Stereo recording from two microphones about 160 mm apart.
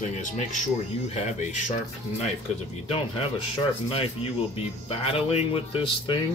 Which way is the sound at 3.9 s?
40° left (ahead or behind).